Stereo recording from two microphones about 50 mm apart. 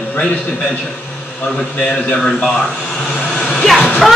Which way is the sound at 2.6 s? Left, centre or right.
Left.